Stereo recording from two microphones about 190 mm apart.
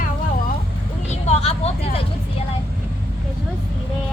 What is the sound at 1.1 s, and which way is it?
Vehicle, 30° left (ahead or behind).